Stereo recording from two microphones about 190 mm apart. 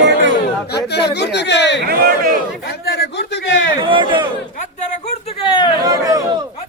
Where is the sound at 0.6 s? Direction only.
60° left (ahead or behind).